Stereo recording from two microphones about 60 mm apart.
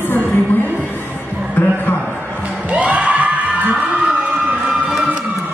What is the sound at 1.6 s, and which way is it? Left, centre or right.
Music, left.